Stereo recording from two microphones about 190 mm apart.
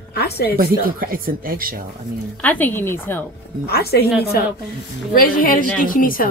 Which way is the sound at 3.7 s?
55° left (ahead or behind).